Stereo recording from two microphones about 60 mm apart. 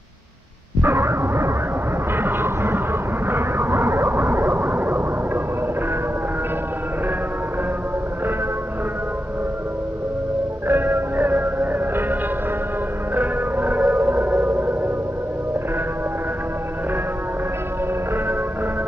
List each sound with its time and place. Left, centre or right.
0.8 s a sound: right
10.7 s music: right
14.0 s civil defense siren: right